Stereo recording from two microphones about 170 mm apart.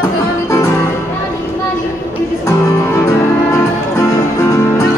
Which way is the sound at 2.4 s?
15° left (ahead or behind).